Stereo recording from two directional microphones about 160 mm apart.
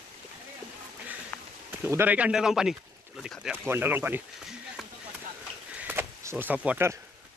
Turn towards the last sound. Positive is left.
turn(degrees=-10)  # may be behind; listen again after turning